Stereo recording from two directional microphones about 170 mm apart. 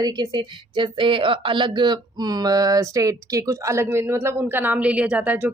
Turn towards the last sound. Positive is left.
turn(degrees=-10)  # may be behind; listen again after turning